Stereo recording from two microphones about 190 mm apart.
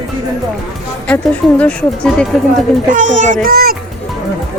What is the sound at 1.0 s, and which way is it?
Speech, 5° left (ahead or behind).